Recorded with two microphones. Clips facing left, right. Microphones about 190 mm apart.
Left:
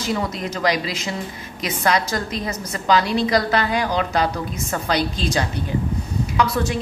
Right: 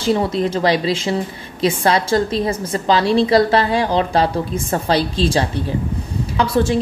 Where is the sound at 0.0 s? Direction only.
30° right (ahead or behind).